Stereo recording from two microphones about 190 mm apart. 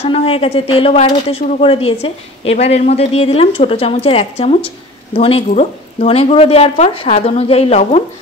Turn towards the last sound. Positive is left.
turn(degrees=35)  # may be behind; listen again after turning